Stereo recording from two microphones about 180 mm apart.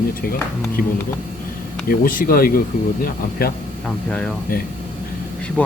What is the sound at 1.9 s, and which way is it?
Speech, 55° left (ahead or behind).